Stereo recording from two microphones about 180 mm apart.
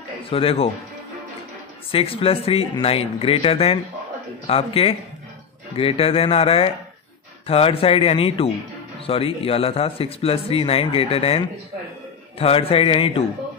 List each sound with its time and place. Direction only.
0.2 s a man's voice: 30° left (ahead or behind)
1.9 s speech: 30° left (ahead or behind)